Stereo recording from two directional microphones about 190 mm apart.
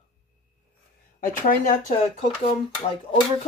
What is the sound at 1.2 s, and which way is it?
Speech, 40° left (ahead or behind).